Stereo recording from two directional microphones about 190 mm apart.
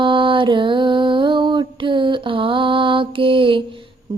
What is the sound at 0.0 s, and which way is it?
Mantra, 25° right (ahead or behind).